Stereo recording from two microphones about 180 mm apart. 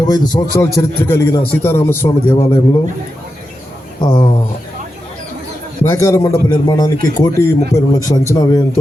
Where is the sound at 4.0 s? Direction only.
30° left (ahead or behind).